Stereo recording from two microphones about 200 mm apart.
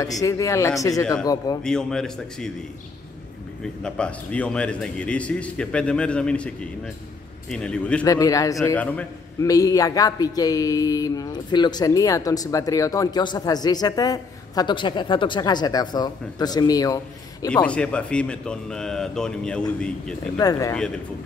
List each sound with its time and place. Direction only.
0.0 s speech: 15° left (ahead or behind)
1.2 s a sound: 20° left (ahead or behind)
1.6 s a man's voice: 5° left (ahead or behind)
3.6 s a man's voice: 5° left (ahead or behind)
7.5 s a man's voice: 5° left (ahead or behind)
8.0 s speech: 15° left (ahead or behind)
9.5 s a sound: 15° left (ahead or behind)
17.6 s a man's voice: 5° left (ahead or behind)
20.3 s speech: 20° left (ahead or behind)